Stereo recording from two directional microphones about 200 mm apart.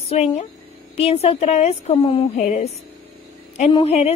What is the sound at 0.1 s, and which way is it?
A woman's voice, 35° left (ahead or behind).